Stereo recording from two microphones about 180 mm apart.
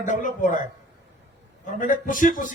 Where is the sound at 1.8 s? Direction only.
50° left (ahead or behind).